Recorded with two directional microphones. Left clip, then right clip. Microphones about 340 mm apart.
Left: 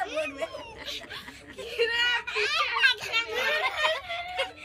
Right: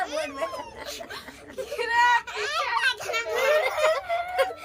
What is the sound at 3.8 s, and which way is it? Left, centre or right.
Speech, centre.